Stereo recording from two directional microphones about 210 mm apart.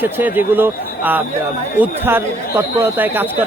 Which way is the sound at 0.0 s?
10° right (ahead or behind).